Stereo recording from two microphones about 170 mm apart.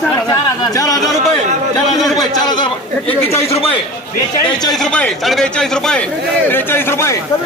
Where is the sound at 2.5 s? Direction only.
25° left (ahead or behind).